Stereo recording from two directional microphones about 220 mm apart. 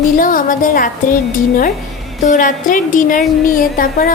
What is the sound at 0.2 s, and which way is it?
Speech, 40° left (ahead or behind).